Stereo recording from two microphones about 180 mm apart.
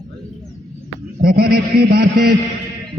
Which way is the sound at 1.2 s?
60° right (ahead or behind).